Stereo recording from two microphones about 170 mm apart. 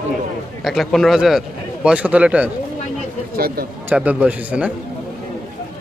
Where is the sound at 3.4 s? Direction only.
65° right (ahead or behind).